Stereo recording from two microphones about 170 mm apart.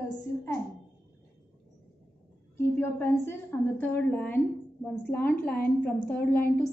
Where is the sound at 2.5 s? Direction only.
15° left (ahead or behind).